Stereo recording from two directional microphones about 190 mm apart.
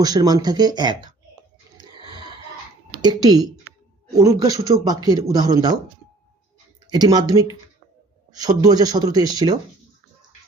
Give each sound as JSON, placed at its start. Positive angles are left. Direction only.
{"t": 0.0, "sound": "speech", "side_deg": -20}
{"t": 3.0, "sound": "speech", "side_deg": -20}
{"t": 6.9, "sound": "speech", "side_deg": -20}